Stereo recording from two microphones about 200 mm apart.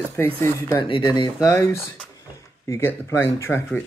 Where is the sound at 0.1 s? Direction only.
10° left (ahead or behind).